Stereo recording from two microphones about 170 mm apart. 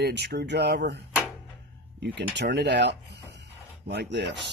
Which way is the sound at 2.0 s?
90° right.